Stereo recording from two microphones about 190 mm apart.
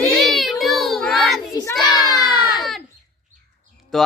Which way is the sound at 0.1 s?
Centre (ahead or behind).